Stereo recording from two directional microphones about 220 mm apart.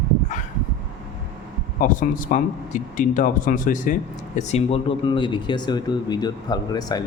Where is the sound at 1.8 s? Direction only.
35° left (ahead or behind).